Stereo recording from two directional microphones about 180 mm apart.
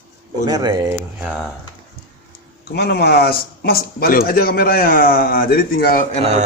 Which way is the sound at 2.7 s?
65° left (ahead or behind).